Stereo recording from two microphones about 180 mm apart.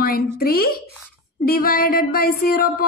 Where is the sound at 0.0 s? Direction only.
55° left (ahead or behind).